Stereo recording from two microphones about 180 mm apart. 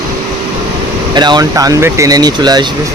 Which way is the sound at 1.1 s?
25° right (ahead or behind).